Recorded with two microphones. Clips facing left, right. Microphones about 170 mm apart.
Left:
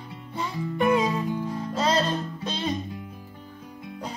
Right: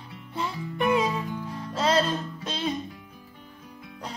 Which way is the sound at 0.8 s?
40° left (ahead or behind).